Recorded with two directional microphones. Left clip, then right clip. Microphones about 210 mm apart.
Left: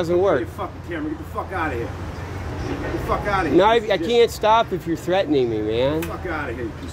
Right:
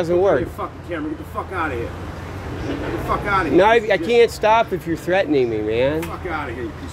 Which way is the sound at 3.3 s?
5° right (ahead or behind).